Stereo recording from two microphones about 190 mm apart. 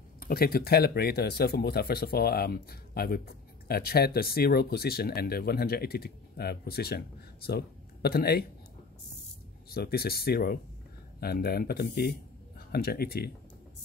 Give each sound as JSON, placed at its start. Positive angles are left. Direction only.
{"t": 0.2, "sound": "speech", "side_deg": 50}
{"t": 9.7, "sound": "speech", "side_deg": 55}